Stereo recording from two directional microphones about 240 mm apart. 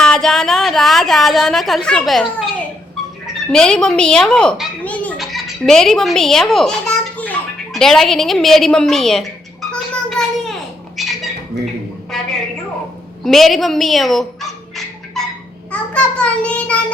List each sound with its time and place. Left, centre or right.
0.0 s a woman's voice: centre
3.3 s a sound: centre
13.2 s fowl: centre
15.7 s a child's voice: centre